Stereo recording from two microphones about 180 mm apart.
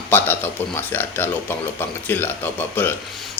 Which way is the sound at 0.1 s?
10° left (ahead or behind).